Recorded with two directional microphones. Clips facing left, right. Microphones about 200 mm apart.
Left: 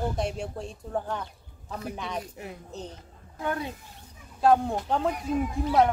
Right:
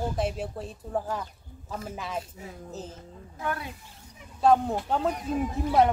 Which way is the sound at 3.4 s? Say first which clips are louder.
Left 2 dB; 25° left (ahead or behind).